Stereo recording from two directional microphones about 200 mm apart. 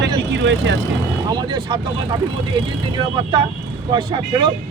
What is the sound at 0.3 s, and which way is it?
Speech, 65° right (ahead or behind).